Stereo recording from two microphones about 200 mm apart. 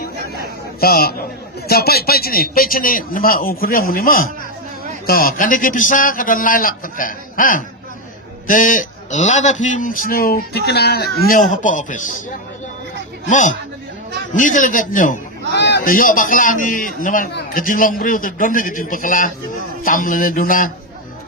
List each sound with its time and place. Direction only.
0.8 s a man's voice: 50° left (ahead or behind)
11.3 s a man's voice: 40° left (ahead or behind)
13.2 s a man's voice: 40° left (ahead or behind)
15.5 s a man's voice: 60° left (ahead or behind)